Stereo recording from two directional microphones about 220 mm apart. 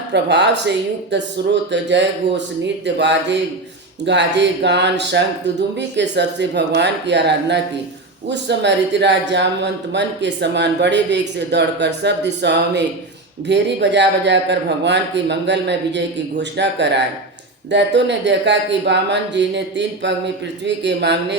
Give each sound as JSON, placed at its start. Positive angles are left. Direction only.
{"t": 0.1, "sound": "speech", "side_deg": -50}